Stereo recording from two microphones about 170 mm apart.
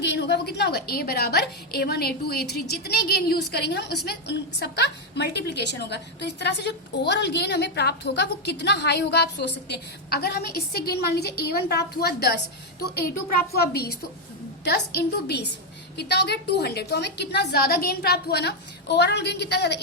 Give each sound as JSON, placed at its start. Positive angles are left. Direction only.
{"t": 0.0, "sound": "a woman's voice", "side_deg": 80}
{"t": 14.6, "sound": "a woman's voice", "side_deg": 80}